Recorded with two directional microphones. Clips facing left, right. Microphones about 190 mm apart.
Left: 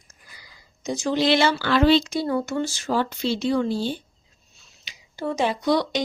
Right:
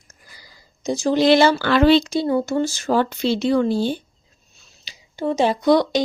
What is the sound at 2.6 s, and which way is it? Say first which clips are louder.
Speech: right 5 dB; 45° right (ahead or behind).